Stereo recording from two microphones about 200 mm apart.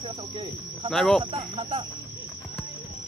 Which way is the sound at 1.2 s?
25° right (ahead or behind).